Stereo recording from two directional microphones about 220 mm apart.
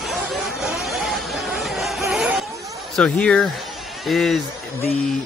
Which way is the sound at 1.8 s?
Centre (ahead or behind).